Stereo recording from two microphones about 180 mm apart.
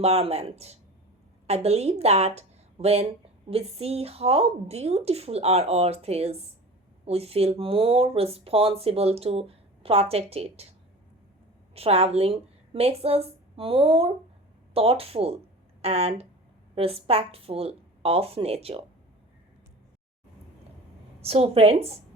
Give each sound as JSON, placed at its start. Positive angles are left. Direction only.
{"t": 0.0, "sound": "a woman's voice", "side_deg": -35}
{"t": 11.7, "sound": "a woman's voice", "side_deg": -35}
{"t": 21.2, "sound": "speech", "side_deg": -35}